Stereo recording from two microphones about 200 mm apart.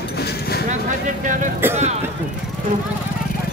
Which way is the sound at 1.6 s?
10° right (ahead or behind).